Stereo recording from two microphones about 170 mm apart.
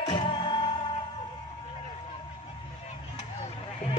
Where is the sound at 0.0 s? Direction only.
30° left (ahead or behind).